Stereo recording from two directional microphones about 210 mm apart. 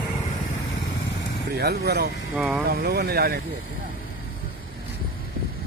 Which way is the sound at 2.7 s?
50° right (ahead or behind).